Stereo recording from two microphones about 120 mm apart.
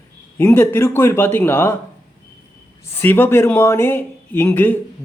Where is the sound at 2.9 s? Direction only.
15° left (ahead or behind).